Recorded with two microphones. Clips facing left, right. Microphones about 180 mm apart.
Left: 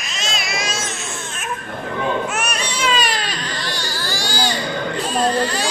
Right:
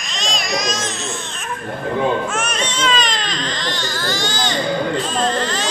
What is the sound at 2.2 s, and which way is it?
Baby cry, 10° left (ahead or behind).